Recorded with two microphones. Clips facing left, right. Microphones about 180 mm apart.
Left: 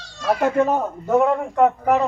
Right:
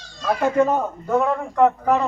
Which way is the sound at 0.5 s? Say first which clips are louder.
Even; 15° left (ahead or behind).